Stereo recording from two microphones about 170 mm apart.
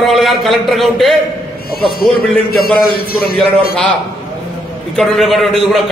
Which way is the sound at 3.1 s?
60° left (ahead or behind).